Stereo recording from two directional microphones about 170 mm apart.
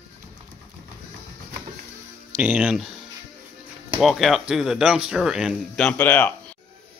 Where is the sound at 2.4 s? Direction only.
10° right (ahead or behind).